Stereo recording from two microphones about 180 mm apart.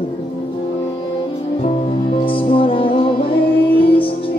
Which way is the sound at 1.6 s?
30° left (ahead or behind).